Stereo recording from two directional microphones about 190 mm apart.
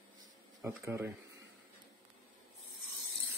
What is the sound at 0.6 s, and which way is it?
Speech, 15° right (ahead or behind).